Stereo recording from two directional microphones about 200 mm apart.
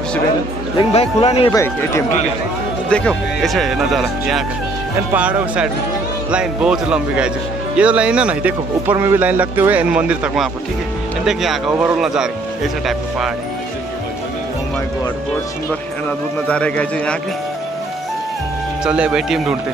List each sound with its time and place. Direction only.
0.7 s a man's voice: 30° left (ahead or behind)
1.5 s speech: 15° left (ahead or behind); by 12.3 s 5° right (ahead or behind)
16.4 s speech: 5° left (ahead or behind)
18.9 s speech: 5° right (ahead or behind)